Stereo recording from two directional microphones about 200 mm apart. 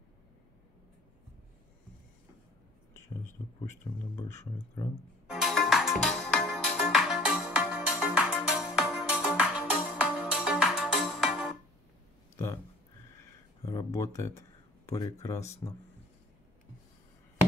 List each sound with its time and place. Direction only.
3.9 s speech: 15° left (ahead or behind)
5.3 s music: centre (ahead or behind)
13.2 s a sound: 20° left (ahead or behind)
14.9 s speech: 20° left (ahead or behind)